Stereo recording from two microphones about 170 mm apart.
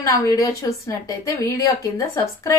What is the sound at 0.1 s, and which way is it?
A woman's voice, 20° left (ahead or behind).